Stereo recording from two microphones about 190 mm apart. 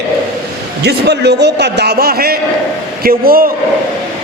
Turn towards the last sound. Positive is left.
turn(degrees=-50)  # may be behind; listen again after turning